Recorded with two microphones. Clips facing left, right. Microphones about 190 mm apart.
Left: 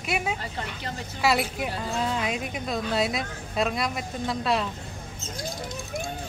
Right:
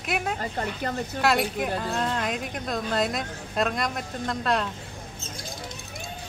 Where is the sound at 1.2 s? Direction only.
5° left (ahead or behind).